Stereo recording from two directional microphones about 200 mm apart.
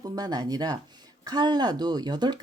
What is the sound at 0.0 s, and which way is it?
Speech, 20° right (ahead or behind).